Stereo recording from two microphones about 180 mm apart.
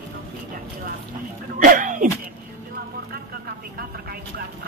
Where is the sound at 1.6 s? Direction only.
45° right (ahead or behind).